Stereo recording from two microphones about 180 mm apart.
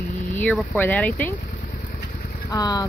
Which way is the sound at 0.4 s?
5° left (ahead or behind).